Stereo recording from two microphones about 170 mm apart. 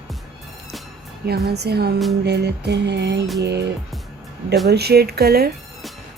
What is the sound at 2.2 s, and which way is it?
Music, 75° right (ahead or behind).